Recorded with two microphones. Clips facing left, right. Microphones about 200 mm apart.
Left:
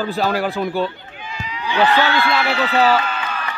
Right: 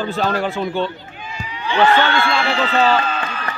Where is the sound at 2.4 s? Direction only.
5° left (ahead or behind).